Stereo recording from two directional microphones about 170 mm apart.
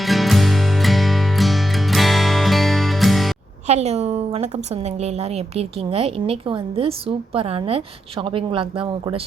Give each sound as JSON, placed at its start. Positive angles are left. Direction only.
{"t": 0.0, "sound": "music", "side_deg": 0}
{"t": 3.7, "sound": "a woman's voice", "side_deg": -40}